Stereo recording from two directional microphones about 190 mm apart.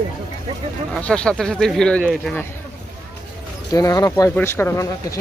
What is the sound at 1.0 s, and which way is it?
Speech, 5° left (ahead or behind).